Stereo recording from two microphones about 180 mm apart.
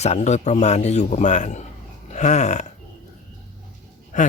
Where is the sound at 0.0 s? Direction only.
40° left (ahead or behind).